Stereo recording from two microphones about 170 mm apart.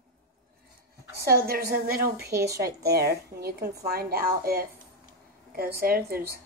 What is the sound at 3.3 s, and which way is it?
A woman's voice, 65° right (ahead or behind).